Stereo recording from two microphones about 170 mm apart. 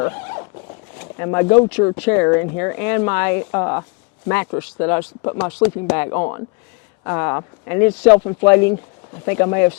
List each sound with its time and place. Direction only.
0.0 s horse: 20° left (ahead or behind)
1.2 s speech: 20° left (ahead or behind)
6.1 s speech: 25° left (ahead or behind)
8.2 s speech: 30° left (ahead or behind)
8.4 s speech: 15° left (ahead or behind)